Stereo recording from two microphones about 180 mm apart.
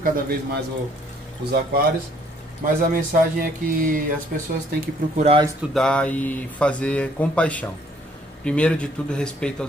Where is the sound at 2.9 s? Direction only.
50° right (ahead or behind).